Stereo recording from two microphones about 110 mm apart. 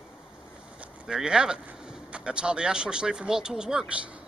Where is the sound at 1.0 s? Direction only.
5° right (ahead or behind).